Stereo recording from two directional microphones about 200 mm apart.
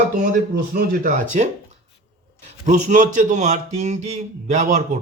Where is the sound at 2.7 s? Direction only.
40° right (ahead or behind).